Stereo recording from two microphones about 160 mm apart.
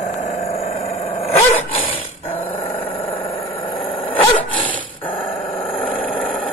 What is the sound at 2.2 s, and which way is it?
Dog, 10° left (ahead or behind).